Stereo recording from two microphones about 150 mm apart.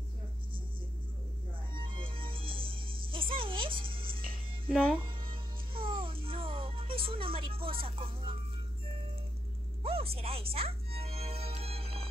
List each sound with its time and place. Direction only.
1.7 s music: 35° right (ahead or behind)
9.8 s music: 40° right (ahead or behind)